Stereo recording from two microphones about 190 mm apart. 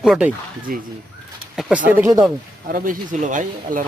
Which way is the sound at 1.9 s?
15° right (ahead or behind).